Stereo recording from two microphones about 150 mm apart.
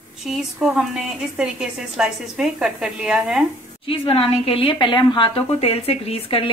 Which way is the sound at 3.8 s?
40° left (ahead or behind).